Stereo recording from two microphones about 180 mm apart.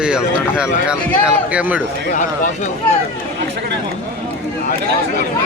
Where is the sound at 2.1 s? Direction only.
45° left (ahead or behind).